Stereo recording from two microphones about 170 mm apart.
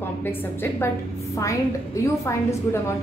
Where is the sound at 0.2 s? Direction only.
15° left (ahead or behind).